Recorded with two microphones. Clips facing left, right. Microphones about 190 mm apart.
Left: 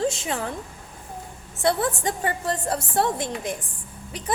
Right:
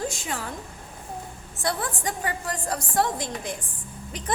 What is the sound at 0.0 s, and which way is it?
Speech, 25° left (ahead or behind).